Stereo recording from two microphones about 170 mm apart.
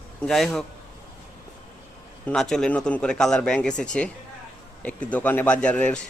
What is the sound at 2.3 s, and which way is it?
Speech, 5° left (ahead or behind).